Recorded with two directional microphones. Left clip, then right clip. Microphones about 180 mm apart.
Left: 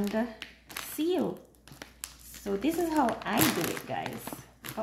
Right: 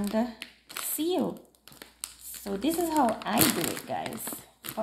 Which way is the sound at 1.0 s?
30° right (ahead or behind).